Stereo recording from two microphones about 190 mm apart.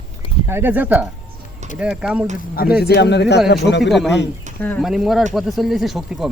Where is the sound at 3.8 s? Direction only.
Centre (ahead or behind).